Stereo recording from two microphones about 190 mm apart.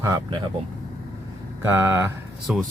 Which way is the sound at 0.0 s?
20° right (ahead or behind).